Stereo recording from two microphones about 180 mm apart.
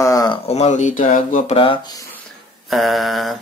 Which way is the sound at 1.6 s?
25° left (ahead or behind).